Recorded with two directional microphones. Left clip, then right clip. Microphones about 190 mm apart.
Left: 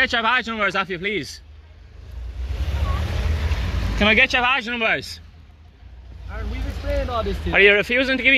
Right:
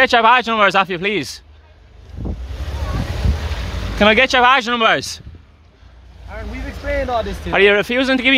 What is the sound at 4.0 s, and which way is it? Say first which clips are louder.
A man's voice: right 5 dB; 50° right (ahead or behind).